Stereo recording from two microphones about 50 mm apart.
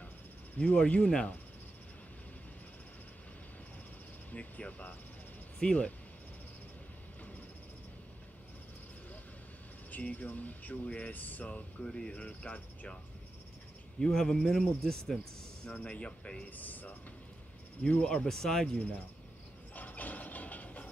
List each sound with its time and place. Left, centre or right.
0.6 s speech: left
4.3 s speech: left
5.6 s speech: centre
9.8 s speech: left
11.8 s speech: centre
13.9 s speech: centre
15.7 s speech: left
18.0 s speech: centre
19.7 s a sound: left